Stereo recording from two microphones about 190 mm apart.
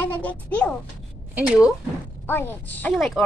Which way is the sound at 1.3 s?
5° right (ahead or behind).